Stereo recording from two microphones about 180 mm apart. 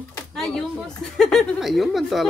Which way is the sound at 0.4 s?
5° left (ahead or behind).